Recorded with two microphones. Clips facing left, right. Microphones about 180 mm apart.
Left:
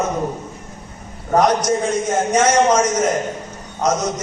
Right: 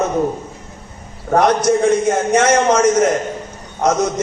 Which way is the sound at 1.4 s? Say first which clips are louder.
Right 3 dB; 60° right (ahead or behind).